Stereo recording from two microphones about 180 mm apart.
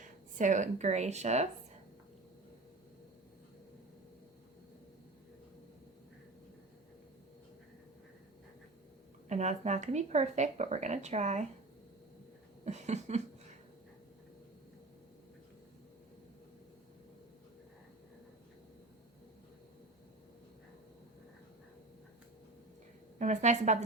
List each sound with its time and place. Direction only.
0.0 s speech: 45° right (ahead or behind)
9.3 s a woman's voice: 40° right (ahead or behind)
12.6 s a woman's voice: 40° right (ahead or behind)
23.1 s a woman's voice: 40° right (ahead or behind)